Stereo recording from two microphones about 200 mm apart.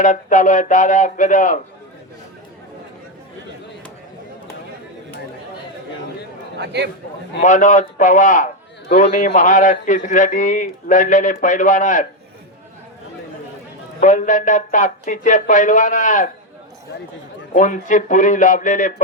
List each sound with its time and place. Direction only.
0.0 s speech: 40° left (ahead or behind)
6.6 s a man's voice: 55° right (ahead or behind)
7.4 s speech: 40° left (ahead or behind)
14.0 s speech: 40° left (ahead or behind)
17.5 s speech: 40° left (ahead or behind)